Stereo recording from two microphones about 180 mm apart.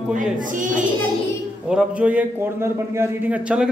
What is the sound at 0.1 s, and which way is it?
Speech, 45° right (ahead or behind).